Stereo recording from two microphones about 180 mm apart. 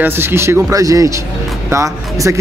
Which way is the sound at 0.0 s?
15° right (ahead or behind).